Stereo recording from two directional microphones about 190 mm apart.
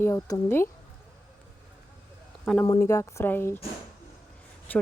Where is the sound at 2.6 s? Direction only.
20° left (ahead or behind).